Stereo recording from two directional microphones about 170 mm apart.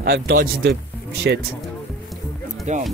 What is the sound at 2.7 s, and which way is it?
Speech, 45° right (ahead or behind).